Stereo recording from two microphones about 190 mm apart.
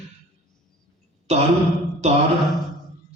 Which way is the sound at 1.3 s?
35° right (ahead or behind).